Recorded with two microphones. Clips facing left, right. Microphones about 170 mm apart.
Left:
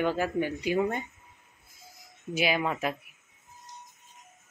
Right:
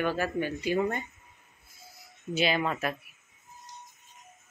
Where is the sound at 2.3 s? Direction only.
10° left (ahead or behind).